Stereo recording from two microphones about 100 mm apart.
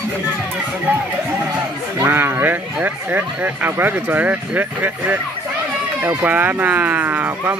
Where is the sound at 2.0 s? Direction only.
20° right (ahead or behind).